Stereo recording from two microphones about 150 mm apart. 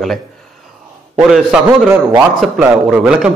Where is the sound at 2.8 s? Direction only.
5° right (ahead or behind).